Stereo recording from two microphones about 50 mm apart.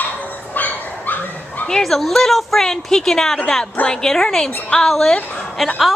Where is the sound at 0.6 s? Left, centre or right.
Left.